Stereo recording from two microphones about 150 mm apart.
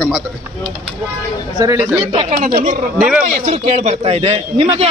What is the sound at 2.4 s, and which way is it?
A man's voice, 60° right (ahead or behind).